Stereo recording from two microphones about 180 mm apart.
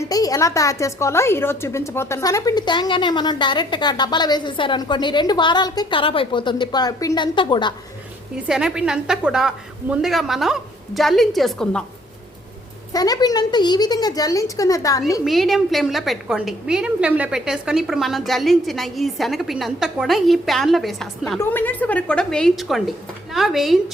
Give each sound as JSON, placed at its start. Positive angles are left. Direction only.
{"t": 0.0, "sound": "a woman's voice", "side_deg": 20}
{"t": 8.4, "sound": "a woman's voice", "side_deg": -5}
{"t": 12.9, "sound": "a woman's voice", "side_deg": 20}
{"t": 15.2, "sound": "a woman's voice", "side_deg": 0}